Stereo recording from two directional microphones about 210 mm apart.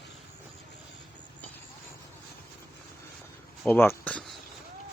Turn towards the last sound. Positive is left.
turn(degrees=10)  # may be behind; listen again after turning